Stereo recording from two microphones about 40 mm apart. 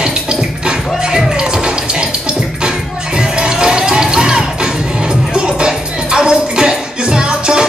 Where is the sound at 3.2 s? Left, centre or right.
Centre.